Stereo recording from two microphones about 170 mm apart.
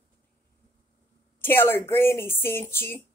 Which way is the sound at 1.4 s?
15° left (ahead or behind).